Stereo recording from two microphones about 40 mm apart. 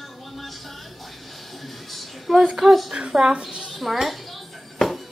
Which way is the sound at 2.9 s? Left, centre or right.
Centre.